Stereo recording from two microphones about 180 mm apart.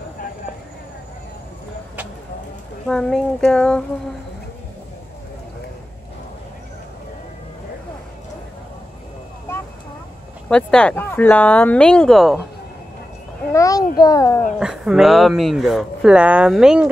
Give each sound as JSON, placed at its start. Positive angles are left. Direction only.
{"t": 2.9, "sound": "speech", "side_deg": 5}
{"t": 10.5, "sound": "speech", "side_deg": 5}
{"t": 13.5, "sound": "a child's voice", "side_deg": 20}
{"t": 14.6, "sound": "speech", "side_deg": -5}